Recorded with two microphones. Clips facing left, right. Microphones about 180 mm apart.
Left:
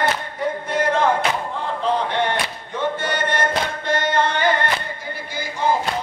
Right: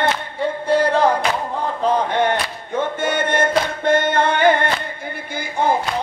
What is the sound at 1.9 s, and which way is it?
Music, 45° right (ahead or behind).